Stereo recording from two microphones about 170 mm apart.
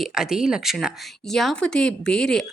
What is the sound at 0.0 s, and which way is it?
A woman's voice, 5° right (ahead or behind).